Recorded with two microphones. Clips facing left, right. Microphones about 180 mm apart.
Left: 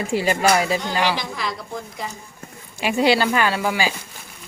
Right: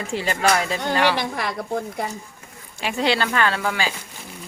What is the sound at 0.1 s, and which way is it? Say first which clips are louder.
Speech: left 2 dB; 10° left (ahead or behind).